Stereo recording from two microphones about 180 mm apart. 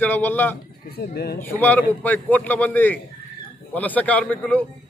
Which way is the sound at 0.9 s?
60° left (ahead or behind).